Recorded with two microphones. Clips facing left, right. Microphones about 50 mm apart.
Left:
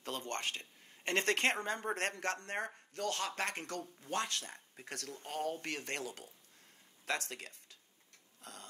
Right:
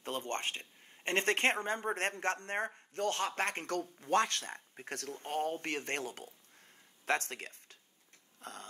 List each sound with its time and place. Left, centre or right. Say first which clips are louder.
0.0 s speech: right 2 dB; right
8.4 s tick-tock: right 5 dB; right